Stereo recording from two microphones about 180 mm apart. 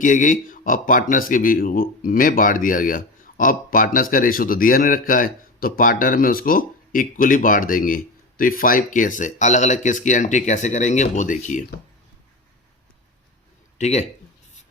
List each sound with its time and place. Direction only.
0.0 s speech: 45° left (ahead or behind)
13.7 s speech: 40° left (ahead or behind)